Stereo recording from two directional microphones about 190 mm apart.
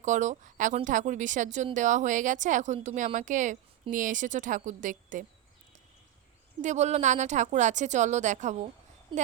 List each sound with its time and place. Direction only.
0.0 s a woman's voice: 40° right (ahead or behind)
6.6 s a woman's voice: 40° right (ahead or behind)